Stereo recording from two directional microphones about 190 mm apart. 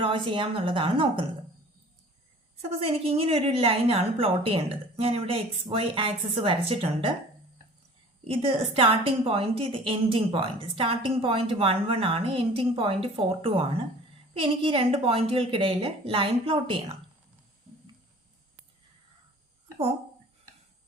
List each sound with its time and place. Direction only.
0.0 s a woman's voice: 30° right (ahead or behind)
2.6 s a woman's voice: 30° right (ahead or behind)
8.3 s a woman's voice: 30° right (ahead or behind)